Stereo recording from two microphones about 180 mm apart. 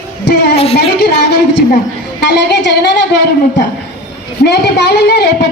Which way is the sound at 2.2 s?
70° left (ahead or behind).